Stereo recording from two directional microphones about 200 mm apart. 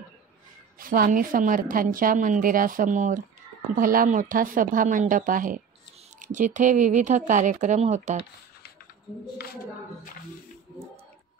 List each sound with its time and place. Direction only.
0.7 s a woman's voice: 45° right (ahead or behind)